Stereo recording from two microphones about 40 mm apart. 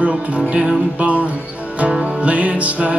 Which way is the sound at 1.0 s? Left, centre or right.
Right.